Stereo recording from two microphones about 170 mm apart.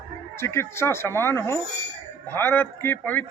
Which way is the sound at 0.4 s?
15° left (ahead or behind).